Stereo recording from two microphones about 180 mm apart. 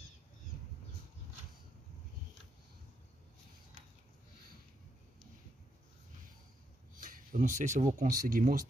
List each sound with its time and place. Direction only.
7.0 s speech: 45° right (ahead or behind)